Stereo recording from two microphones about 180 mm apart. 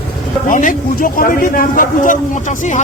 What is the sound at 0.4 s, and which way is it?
A man's voice, 50° left (ahead or behind).